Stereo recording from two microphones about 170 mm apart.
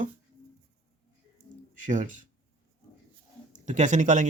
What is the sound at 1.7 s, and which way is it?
Speech, 50° right (ahead or behind).